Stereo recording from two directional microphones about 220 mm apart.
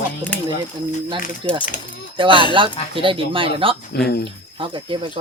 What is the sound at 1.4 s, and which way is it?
Speech, 20° right (ahead or behind).